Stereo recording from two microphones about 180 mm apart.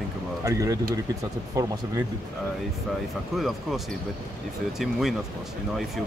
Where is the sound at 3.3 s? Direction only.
Centre (ahead or behind).